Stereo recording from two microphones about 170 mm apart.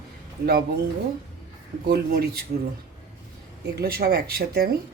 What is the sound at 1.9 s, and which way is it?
Speech, 70° right (ahead or behind).